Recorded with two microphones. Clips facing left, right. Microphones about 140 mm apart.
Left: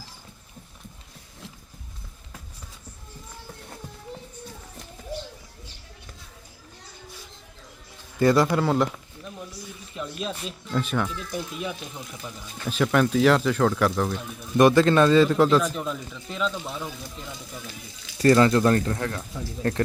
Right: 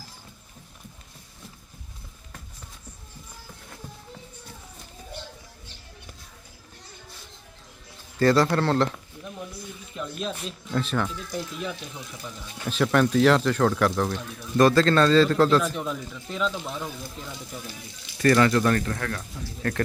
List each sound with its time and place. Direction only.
8.2 s a man's voice: 15° left (ahead or behind)
9.9 s a sound: centre (ahead or behind)
10.8 s a man's voice: 5° left (ahead or behind)
12.6 s speech: centre (ahead or behind)
14.5 s a man's voice: 20° left (ahead or behind)
15.7 s speech: centre (ahead or behind)
18.2 s speech: 25° left (ahead or behind)